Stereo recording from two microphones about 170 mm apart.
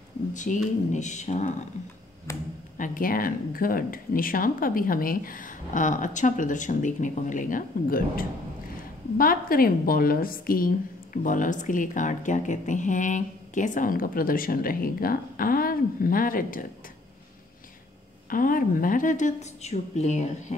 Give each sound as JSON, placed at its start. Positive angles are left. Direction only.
{"t": 0.3, "sound": "a woman's voice", "side_deg": 45}
{"t": 2.3, "sound": "speech", "side_deg": 15}
{"t": 2.8, "sound": "speech", "side_deg": 55}
{"t": 18.3, "sound": "a woman's voice", "side_deg": 55}